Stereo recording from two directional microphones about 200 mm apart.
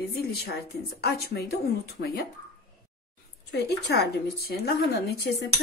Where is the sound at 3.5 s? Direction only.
55° left (ahead or behind).